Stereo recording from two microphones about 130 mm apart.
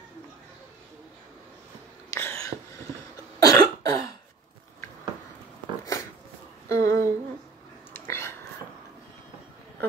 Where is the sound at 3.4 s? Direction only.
30° left (ahead or behind).